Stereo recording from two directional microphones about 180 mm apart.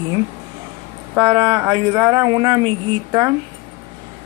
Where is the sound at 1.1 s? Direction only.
25° right (ahead or behind).